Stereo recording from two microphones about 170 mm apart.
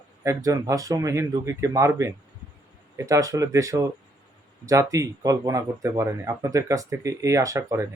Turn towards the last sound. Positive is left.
turn(degrees=-20)  # may be behind; listen again after turning